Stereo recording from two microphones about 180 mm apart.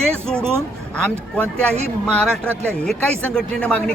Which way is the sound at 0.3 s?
15° right (ahead or behind).